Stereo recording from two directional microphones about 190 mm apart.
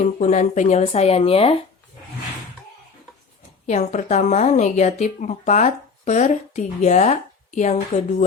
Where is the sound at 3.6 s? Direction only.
40° left (ahead or behind).